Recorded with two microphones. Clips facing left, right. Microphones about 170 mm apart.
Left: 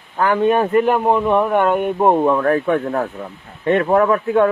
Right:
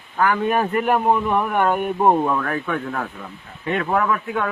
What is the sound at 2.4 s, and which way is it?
Speech, 35° left (ahead or behind).